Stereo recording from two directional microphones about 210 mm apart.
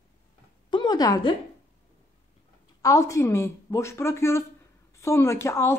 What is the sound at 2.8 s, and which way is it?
A woman's voice, 15° left (ahead or behind).